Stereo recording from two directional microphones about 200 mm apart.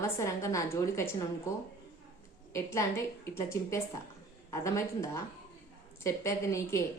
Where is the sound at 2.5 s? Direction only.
15° left (ahead or behind).